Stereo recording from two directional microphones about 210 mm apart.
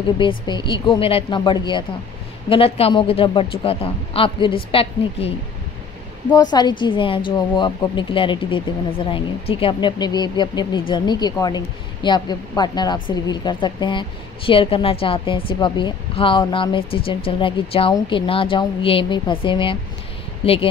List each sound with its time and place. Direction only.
0.2 s speech: 20° left (ahead or behind)
6.3 s speech: 20° left (ahead or behind)